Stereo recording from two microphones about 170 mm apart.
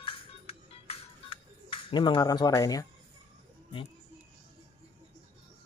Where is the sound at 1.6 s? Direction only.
30° left (ahead or behind).